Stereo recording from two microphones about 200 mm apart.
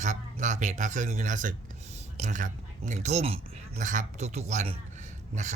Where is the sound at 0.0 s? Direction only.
35° right (ahead or behind).